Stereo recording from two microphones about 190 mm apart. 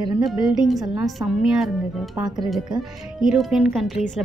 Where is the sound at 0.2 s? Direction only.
Centre (ahead or behind).